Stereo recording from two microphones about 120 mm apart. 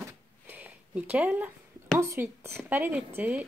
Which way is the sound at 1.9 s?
20° right (ahead or behind).